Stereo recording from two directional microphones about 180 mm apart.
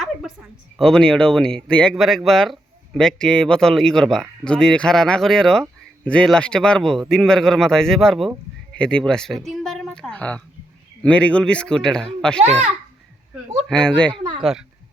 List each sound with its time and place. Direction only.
0.8 s speech: 5° left (ahead or behind)
12.4 s a child's voice: 35° right (ahead or behind)
13.7 s speech: 5° left (ahead or behind)
14.1 s speech: 30° right (ahead or behind)